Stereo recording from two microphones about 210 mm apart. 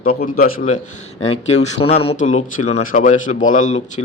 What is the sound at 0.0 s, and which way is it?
A man's voice, 45° left (ahead or behind).